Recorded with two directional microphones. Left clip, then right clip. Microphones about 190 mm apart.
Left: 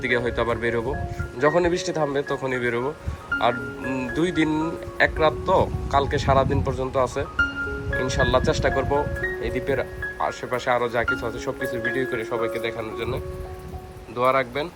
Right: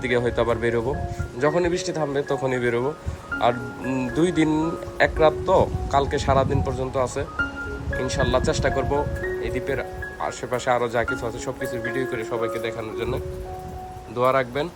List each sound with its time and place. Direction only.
0.0 s speech: 15° right (ahead or behind)